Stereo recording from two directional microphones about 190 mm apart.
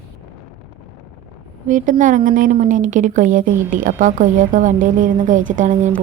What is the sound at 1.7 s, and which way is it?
Speech, 40° right (ahead or behind).